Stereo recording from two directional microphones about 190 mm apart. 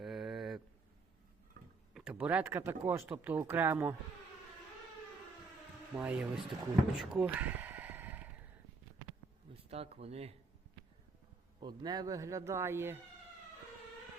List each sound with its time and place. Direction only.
0.0 s a sound: centre (ahead or behind)
1.6 s tick-tock: 50° right (ahead or behind)
1.9 s speech: 5° right (ahead or behind)
6.0 s speech: 5° right (ahead or behind)
6.9 s a sound: 5° right (ahead or behind)
9.6 s speech: 30° right (ahead or behind)
11.6 s speech: 20° right (ahead or behind)